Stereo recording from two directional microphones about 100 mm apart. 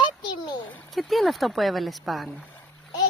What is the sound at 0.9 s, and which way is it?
Speech, centre (ahead or behind).